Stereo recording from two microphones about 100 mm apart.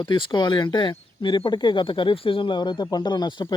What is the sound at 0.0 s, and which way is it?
Speech, 50° left (ahead or behind).